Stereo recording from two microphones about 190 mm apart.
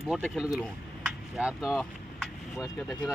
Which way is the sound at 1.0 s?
5° right (ahead or behind).